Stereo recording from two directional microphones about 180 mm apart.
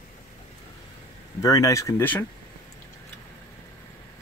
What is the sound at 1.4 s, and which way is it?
Speech, 20° left (ahead or behind).